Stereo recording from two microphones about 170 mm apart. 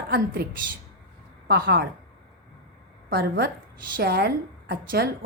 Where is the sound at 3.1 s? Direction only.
70° right (ahead or behind).